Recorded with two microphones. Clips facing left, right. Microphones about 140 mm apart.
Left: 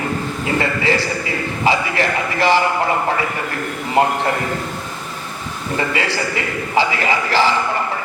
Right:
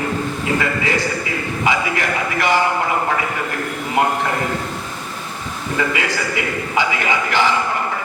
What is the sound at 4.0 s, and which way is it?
Speech, 30° left (ahead or behind).